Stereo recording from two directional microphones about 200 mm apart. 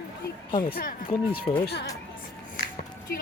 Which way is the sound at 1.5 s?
35° left (ahead or behind).